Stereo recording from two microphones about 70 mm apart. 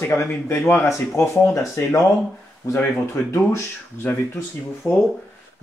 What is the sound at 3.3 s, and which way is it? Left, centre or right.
Speech, left.